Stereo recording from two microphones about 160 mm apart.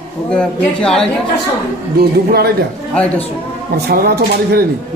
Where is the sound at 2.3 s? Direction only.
80° right.